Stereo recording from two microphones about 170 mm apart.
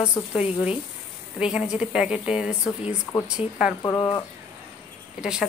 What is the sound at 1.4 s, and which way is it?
A woman's voice, 5° right (ahead or behind).